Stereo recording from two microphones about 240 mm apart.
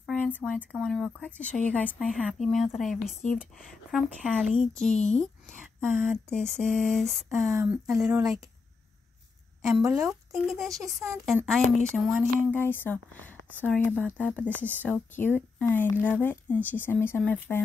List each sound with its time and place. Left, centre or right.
0.0 s a woman's voice: centre
5.9 s speech: left
6.3 s a woman's voice: centre
9.8 s speech: centre
10.3 s a woman's voice: centre